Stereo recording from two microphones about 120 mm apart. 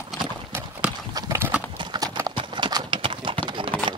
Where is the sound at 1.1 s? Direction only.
25° right (ahead or behind); by 3.4 s 45° right (ahead or behind).